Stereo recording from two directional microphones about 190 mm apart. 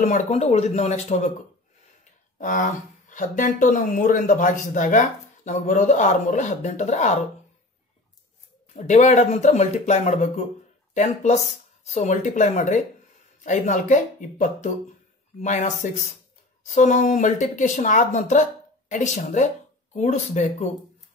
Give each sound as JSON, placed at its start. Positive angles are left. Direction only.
{"t": 0.0, "sound": "speech", "side_deg": 40}
{"t": 2.3, "sound": "speech", "side_deg": 45}
{"t": 8.7, "sound": "speech", "side_deg": 40}
{"t": 11.8, "sound": "speech", "side_deg": 40}